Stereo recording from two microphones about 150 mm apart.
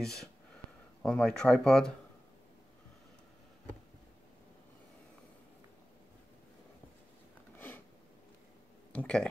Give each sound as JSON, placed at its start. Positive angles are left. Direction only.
{"t": 0.0, "sound": "speech", "side_deg": 5}
{"t": 7.5, "sound": "a sound", "side_deg": 10}
{"t": 8.9, "sound": "speech", "side_deg": 5}